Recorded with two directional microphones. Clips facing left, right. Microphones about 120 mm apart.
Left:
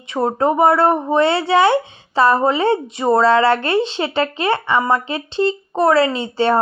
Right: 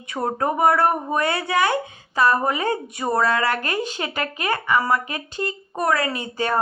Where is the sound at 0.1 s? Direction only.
25° left (ahead or behind).